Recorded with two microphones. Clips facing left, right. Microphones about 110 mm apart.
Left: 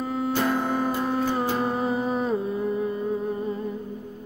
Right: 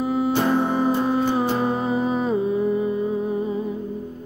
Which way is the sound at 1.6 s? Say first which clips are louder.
Right 3 dB; centre (ahead or behind).